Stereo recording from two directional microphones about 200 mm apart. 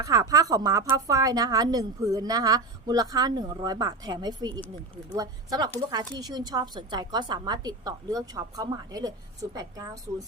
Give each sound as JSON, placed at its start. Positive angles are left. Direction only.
{"t": 0.0, "sound": "a woman's voice", "side_deg": -15}